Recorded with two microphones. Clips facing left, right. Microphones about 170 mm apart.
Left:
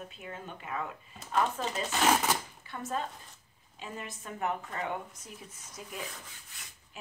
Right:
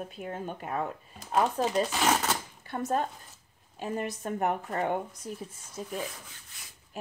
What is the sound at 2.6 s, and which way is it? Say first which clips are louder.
A woman's voice: right 9 dB; 45° right (ahead or behind).